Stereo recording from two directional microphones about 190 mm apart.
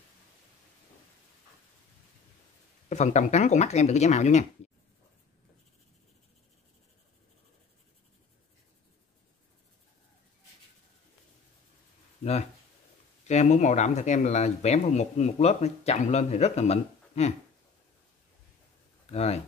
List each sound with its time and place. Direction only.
2.9 s speech: 35° left (ahead or behind)
12.2 s a sound: 35° left (ahead or behind)
13.3 s speech: 35° left (ahead or behind)
19.0 s speech: 35° left (ahead or behind)